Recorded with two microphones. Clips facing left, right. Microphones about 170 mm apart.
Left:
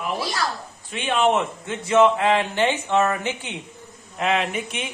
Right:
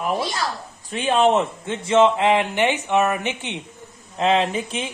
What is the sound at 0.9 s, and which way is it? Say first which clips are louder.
Speech: right 3 dB; 35° right (ahead or behind).